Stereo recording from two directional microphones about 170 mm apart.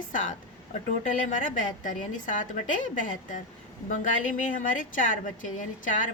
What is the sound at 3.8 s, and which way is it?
A woman's voice, 50° left (ahead or behind).